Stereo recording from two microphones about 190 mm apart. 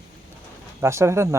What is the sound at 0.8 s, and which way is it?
Speech, 15° right (ahead or behind).